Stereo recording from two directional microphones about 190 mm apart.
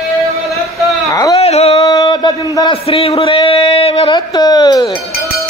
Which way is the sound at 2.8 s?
30° left (ahead or behind).